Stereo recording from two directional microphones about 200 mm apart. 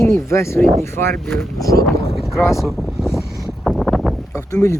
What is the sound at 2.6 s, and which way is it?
Boat, centre (ahead or behind).